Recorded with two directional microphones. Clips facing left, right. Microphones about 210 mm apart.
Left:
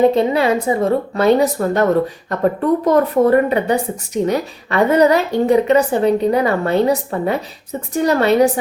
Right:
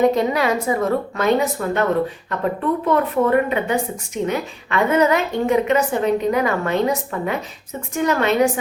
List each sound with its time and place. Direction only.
0.0 s a woman's voice: 30° left (ahead or behind)